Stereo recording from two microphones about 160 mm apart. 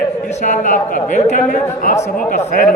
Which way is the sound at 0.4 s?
50° left (ahead or behind).